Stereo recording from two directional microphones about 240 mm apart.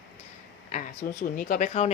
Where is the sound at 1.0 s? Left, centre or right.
Left.